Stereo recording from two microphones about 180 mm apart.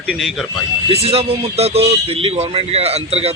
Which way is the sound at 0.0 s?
Centre (ahead or behind).